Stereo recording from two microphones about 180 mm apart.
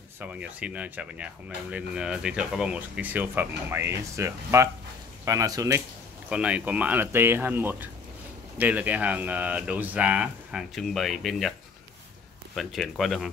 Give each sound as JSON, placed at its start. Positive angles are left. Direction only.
{"t": 0.2, "sound": "speech", "side_deg": -5}
{"t": 6.2, "sound": "speech", "side_deg": -5}
{"t": 12.5, "sound": "speech", "side_deg": 0}